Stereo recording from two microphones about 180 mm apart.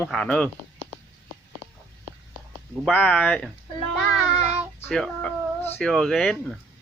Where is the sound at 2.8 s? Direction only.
10° left (ahead or behind).